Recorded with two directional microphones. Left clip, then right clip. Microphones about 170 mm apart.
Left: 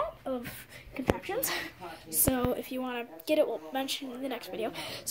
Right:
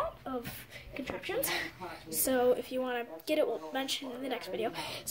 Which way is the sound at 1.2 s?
55° left (ahead or behind).